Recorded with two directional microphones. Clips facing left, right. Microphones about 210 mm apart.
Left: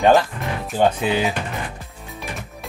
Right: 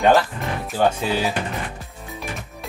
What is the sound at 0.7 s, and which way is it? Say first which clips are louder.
Speech: left 2 dB; 20° left (ahead or behind).